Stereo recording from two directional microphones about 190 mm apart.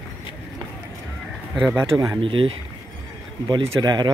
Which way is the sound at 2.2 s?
30° right (ahead or behind).